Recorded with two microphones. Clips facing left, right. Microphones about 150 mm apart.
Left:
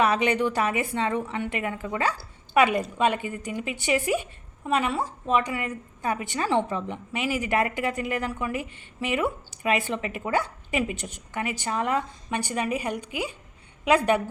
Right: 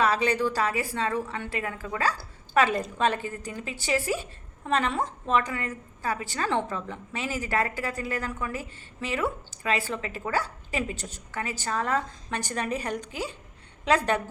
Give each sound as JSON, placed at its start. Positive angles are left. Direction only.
{"t": 0.0, "sound": "a woman's voice", "side_deg": 20}